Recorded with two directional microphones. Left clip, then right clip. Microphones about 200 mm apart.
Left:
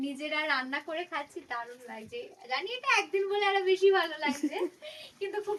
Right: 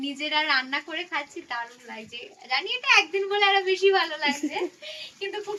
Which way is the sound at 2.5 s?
20° left (ahead or behind).